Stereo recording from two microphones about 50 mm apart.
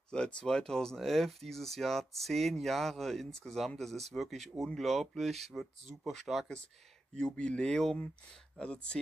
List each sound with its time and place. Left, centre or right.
0.1 s speech: centre
7.2 s speech: centre